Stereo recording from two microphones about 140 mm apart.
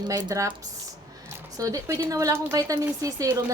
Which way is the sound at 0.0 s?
30° right (ahead or behind).